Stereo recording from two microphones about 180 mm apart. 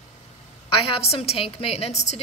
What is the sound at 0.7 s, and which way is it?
A woman's voice, 30° left (ahead or behind).